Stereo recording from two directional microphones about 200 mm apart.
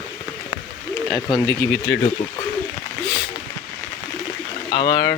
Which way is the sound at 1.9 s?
70° left (ahead or behind).